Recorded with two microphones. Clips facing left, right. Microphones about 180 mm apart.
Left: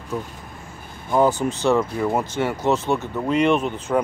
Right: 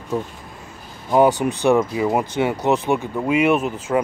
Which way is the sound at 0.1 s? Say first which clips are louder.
Right 4 dB; 30° right (ahead or behind).